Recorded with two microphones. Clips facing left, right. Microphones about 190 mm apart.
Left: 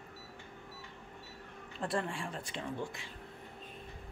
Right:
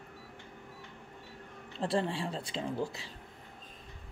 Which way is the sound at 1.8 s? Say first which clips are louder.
Right 4 dB; 30° right (ahead or behind).